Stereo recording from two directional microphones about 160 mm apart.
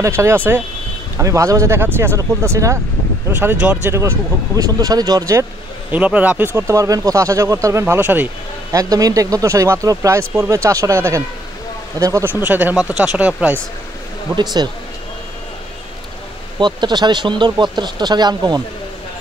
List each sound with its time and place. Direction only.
0.0 s speech: 15° right (ahead or behind)
8.7 s speech: 20° right (ahead or behind)
14.3 s speech: 25° right (ahead or behind)
16.5 s speech: 30° right (ahead or behind)